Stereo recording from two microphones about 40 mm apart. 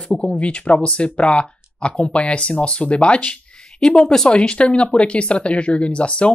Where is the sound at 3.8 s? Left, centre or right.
Centre.